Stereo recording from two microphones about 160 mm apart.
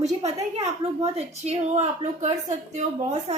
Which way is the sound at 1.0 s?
40° right (ahead or behind).